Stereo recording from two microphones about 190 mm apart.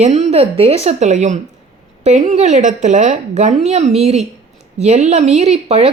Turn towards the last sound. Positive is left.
turn(degrees=-35)  # may be behind; listen again after turning